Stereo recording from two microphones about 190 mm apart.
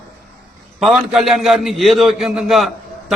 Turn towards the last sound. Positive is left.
turn(degrees=0)  # may be behind; listen again after turning